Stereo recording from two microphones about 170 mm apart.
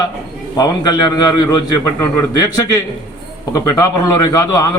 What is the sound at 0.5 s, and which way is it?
A man's voice, 25° left (ahead or behind).